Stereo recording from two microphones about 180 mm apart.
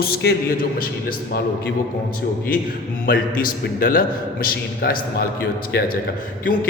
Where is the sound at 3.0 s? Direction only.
55° left (ahead or behind).